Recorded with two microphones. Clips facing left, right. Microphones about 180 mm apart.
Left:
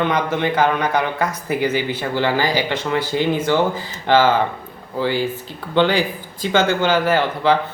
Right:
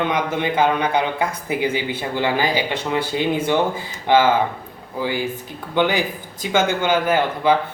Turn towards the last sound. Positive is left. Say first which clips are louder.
# left 1 dB
turn(degrees=-10)  # may be behind; listen again after turning